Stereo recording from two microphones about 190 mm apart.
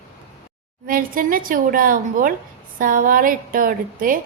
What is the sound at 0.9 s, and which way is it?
A woman's voice, 45° right (ahead or behind).